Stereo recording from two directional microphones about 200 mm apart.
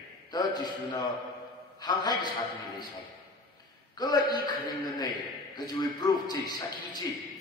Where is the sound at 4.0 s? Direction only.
20° left (ahead or behind).